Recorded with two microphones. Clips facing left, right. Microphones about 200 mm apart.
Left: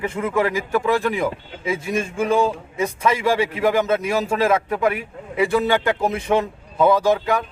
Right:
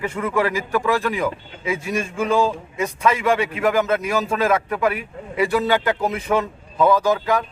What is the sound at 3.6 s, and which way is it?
Speech, 15° left (ahead or behind).